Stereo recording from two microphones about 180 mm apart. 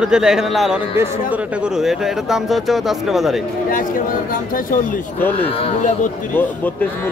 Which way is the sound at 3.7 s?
50° left (ahead or behind).